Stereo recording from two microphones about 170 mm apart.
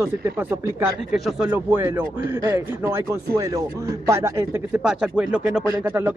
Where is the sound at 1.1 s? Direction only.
Centre (ahead or behind).